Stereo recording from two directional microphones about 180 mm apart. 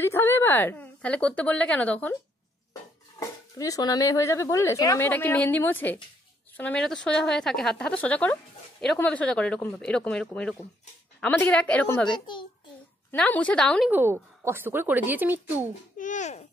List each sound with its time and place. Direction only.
0.0 s a woman's voice: 15° left (ahead or behind)
3.2 s a woman's voice: 20° left (ahead or behind)
13.8 s speech: 10° right (ahead or behind)
16.0 s a child's voice: 45° left (ahead or behind)